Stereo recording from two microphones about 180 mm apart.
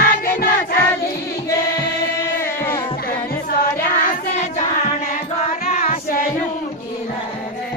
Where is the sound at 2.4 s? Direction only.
15° left (ahead or behind).